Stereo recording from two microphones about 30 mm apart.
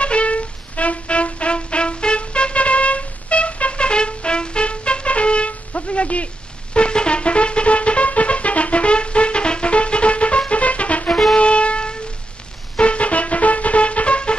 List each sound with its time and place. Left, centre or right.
0.0 s music: left
6.7 s music: left
11.3 s music: left